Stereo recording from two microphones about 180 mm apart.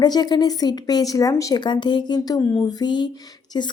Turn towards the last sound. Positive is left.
turn(degrees=25)  # may be behind; listen again after turning